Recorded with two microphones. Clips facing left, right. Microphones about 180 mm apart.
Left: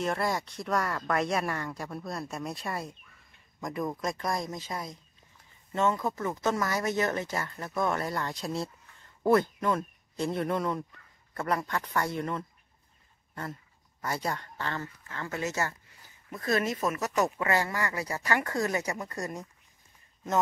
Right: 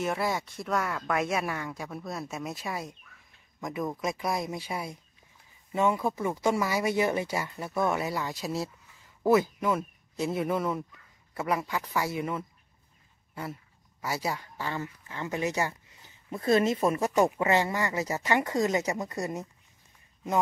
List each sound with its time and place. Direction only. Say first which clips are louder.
0.0 s speech: even; centre (ahead or behind)